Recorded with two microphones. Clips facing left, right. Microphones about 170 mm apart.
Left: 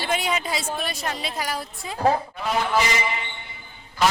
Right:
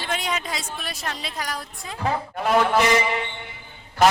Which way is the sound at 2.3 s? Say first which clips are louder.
Right 4 dB; 55° right (ahead or behind).